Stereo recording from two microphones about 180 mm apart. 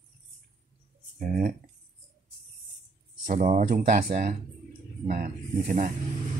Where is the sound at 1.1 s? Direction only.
50° right (ahead or behind).